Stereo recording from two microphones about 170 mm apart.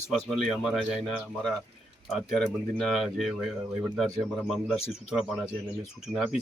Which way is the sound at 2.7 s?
Centre (ahead or behind).